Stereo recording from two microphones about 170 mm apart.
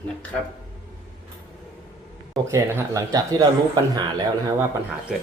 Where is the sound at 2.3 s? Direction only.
15° right (ahead or behind).